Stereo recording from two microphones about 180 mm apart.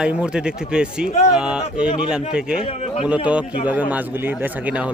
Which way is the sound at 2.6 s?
30° left (ahead or behind).